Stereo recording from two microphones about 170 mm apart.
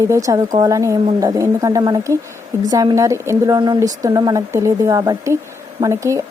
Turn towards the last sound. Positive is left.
turn(degrees=-20)  # may be behind; listen again after turning